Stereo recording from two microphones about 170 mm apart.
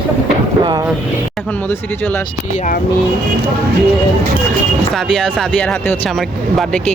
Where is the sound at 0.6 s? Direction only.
25° right (ahead or behind).